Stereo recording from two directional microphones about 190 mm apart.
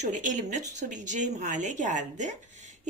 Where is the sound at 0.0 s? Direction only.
40° right (ahead or behind).